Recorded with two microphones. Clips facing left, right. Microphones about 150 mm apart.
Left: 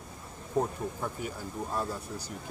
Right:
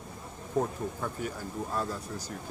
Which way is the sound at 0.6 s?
10° left (ahead or behind).